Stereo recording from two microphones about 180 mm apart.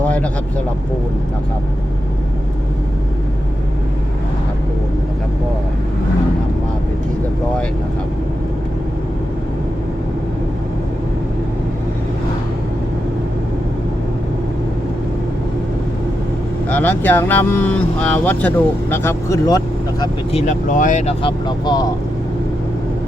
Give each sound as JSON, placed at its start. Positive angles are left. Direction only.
{"t": 16.6, "sound": "speech", "side_deg": 10}
{"t": 20.3, "sound": "speech", "side_deg": 45}
{"t": 21.2, "sound": "speech", "side_deg": 25}